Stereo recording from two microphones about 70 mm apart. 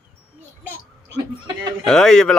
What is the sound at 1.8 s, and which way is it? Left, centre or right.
Speech, centre.